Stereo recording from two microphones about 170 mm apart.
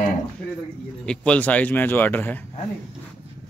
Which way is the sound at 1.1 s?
5° left (ahead or behind).